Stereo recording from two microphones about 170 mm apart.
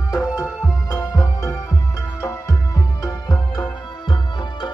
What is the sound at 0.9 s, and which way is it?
Music, 20° left (ahead or behind).